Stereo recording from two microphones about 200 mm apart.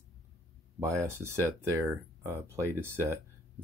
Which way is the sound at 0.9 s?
15° right (ahead or behind).